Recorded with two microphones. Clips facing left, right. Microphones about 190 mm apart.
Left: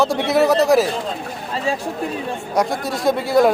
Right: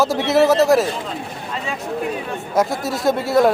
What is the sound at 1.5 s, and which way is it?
Chatter, 35° left (ahead or behind).